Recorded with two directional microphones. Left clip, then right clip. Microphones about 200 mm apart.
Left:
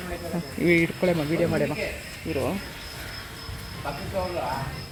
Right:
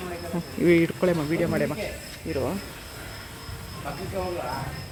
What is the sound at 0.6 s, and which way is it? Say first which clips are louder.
Speech: right 1 dB; centre (ahead or behind).